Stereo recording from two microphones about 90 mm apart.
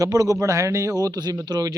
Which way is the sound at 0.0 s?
40° right (ahead or behind).